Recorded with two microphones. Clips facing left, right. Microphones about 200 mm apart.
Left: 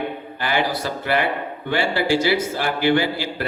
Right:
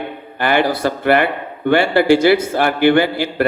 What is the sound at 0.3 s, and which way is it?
Speech, 60° right (ahead or behind).